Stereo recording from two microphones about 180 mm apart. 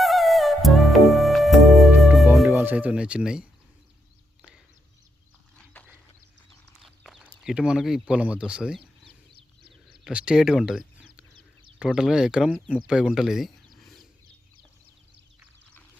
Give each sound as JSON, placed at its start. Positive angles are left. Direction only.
{"t": 0.0, "sound": "music", "side_deg": 0}
{"t": 2.6, "sound": "speech", "side_deg": -10}
{"t": 6.8, "sound": "speech", "side_deg": 0}
{"t": 9.3, "sound": "a sound", "side_deg": -60}
{"t": 10.0, "sound": "speech", "side_deg": -5}
{"t": 13.8, "sound": "a sound", "side_deg": 0}